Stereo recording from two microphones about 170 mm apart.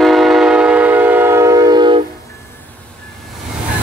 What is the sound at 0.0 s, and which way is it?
Train, centre (ahead or behind).